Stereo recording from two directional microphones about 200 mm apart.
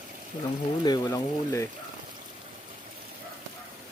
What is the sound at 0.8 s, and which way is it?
Speech, 20° left (ahead or behind).